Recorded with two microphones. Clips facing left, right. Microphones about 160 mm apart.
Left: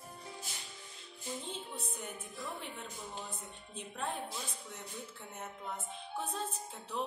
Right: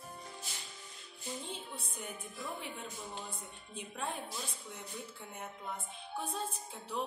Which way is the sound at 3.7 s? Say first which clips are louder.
Even; 5° right (ahead or behind).